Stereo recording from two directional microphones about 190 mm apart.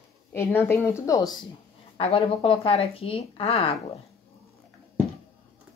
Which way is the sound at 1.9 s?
30° left (ahead or behind).